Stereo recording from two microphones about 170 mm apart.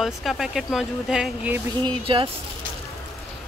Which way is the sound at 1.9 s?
30° right (ahead or behind).